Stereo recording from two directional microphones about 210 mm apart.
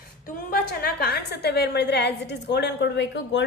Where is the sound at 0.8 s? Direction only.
45° left (ahead or behind).